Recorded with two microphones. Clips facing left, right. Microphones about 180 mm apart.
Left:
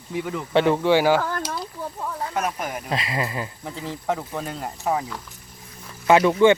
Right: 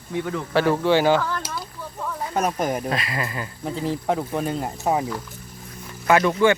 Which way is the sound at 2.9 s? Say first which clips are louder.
Left 1 dB; 25° left (ahead or behind).